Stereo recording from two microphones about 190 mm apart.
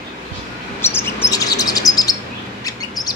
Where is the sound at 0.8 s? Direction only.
10° left (ahead or behind).